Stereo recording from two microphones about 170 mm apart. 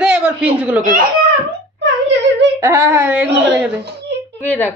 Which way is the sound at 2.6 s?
15° right (ahead or behind).